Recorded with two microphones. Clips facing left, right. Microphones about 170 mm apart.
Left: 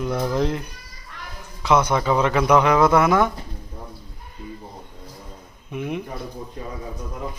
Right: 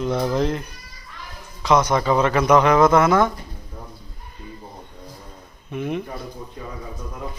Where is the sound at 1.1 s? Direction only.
65° left (ahead or behind).